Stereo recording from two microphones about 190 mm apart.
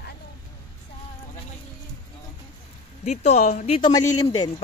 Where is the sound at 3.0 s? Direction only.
40° left (ahead or behind).